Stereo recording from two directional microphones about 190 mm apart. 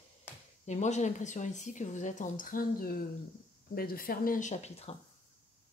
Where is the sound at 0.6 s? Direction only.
35° left (ahead or behind).